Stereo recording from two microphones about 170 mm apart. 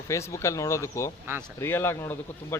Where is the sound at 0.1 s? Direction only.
15° left (ahead or behind).